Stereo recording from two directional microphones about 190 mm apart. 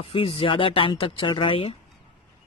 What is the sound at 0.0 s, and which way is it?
Speech, 30° left (ahead or behind).